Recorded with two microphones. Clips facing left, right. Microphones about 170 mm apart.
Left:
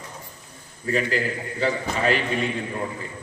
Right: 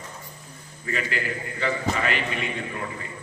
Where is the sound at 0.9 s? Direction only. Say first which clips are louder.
Left 5 dB; 35° left (ahead or behind).